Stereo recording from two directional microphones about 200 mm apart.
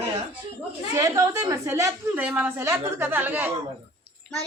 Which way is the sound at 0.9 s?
15° right (ahead or behind).